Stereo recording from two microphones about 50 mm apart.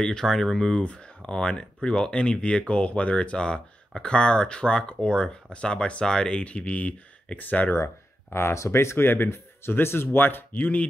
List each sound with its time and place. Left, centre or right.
0.0 s speech: centre; by 7.7 s left
7.7 s speech: left
8.9 s speech: left